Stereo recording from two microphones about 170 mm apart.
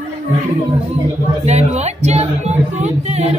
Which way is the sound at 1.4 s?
40° right (ahead or behind).